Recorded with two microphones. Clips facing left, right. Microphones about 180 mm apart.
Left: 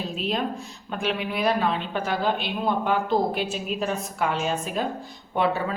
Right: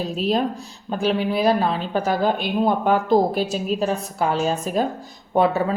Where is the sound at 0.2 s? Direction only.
40° right (ahead or behind).